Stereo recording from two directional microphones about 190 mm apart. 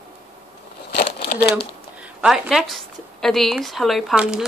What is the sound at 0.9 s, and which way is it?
Crumpling, 60° left (ahead or behind).